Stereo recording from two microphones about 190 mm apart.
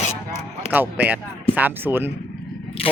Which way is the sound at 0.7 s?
10° right (ahead or behind).